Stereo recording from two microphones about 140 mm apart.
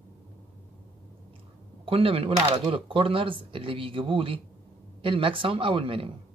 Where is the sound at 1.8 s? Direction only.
40° right (ahead or behind).